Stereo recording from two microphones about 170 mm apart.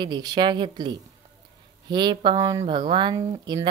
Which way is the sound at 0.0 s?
25° right (ahead or behind).